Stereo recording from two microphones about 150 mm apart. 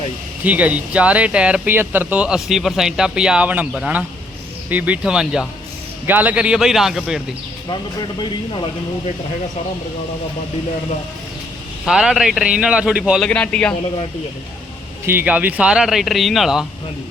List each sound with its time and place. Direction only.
0.4 s speech: 10° right (ahead or behind)
7.7 s speech: 30° left (ahead or behind)
11.9 s speech: 5° right (ahead or behind)
13.2 s a man's voice: 5° left (ahead or behind)
15.0 s speech: 15° right (ahead or behind)